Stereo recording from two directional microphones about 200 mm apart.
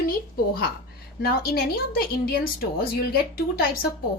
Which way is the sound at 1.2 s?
50° left (ahead or behind).